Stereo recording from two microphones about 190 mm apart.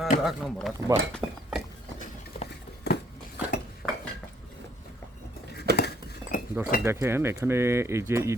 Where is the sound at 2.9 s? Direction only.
60° left (ahead or behind).